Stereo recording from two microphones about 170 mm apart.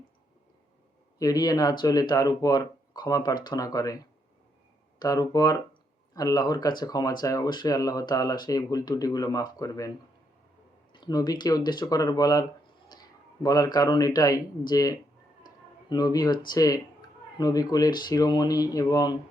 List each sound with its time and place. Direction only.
1.2 s speech: 20° left (ahead or behind)
10.9 s speech: 25° left (ahead or behind)
12.9 s a sound: 20° left (ahead or behind)
13.7 s speech: 20° left (ahead or behind)
15.4 s a sound: 25° left (ahead or behind)
16.5 s speech: 20° left (ahead or behind)